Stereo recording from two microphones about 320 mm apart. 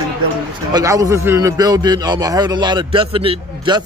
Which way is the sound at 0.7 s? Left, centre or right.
Centre.